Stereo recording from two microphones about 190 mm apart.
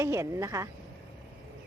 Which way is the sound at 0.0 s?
15° right (ahead or behind).